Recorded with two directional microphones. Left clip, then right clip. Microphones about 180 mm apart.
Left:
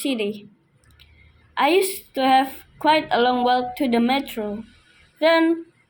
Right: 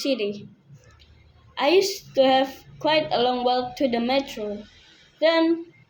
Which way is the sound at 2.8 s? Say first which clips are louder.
Left 3 dB; 60° left (ahead or behind).